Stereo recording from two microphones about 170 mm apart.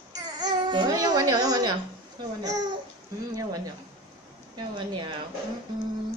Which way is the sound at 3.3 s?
20° right (ahead or behind).